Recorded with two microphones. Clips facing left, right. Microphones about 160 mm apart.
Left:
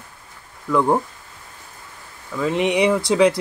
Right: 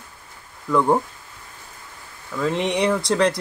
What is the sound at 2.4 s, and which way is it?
Speech, 5° left (ahead or behind).